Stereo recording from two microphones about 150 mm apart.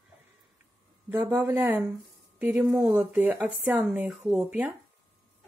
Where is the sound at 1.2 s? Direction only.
20° right (ahead or behind).